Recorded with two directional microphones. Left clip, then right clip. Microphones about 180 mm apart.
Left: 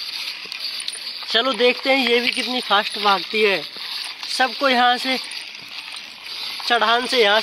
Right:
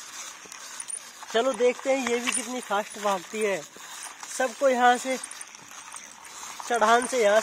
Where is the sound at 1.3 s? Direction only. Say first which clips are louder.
Left 6 dB; centre (ahead or behind).